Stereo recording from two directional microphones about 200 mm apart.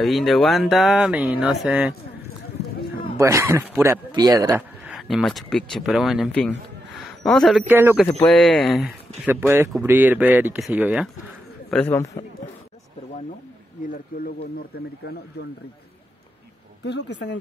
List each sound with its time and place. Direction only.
0.0 s speech: centre (ahead or behind)
3.2 s speech: 15° right (ahead or behind)
4.8 s speech: centre (ahead or behind)
7.6 s speech: 10° right (ahead or behind)
8.2 s speech: centre (ahead or behind)
11.7 s a man's voice: 10° left (ahead or behind)
13.8 s speech: 45° left (ahead or behind)
16.8 s speech: 60° left (ahead or behind)